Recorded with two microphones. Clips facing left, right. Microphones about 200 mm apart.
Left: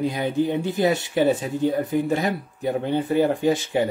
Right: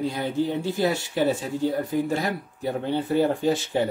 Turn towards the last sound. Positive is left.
turn(degrees=15)  # may be behind; listen again after turning